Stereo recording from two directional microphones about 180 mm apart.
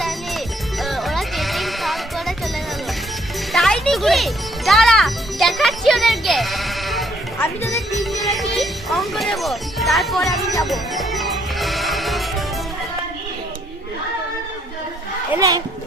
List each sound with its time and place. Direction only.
0.0 s music: centre (ahead or behind)
3.5 s music: centre (ahead or behind)
7.3 s speech: 15° left (ahead or behind)
7.9 s speech: centre (ahead or behind)
10.7 s music: centre (ahead or behind)
15.4 s a child's voice: 20° right (ahead or behind)